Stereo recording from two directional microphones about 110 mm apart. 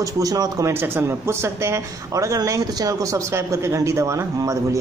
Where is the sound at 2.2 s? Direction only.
30° right (ahead or behind).